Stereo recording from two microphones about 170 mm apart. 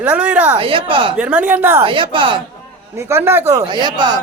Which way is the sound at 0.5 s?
30° right (ahead or behind).